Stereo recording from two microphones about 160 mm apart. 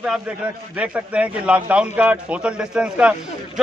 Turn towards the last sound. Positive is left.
turn(degrees=-5)  # may be behind; listen again after turning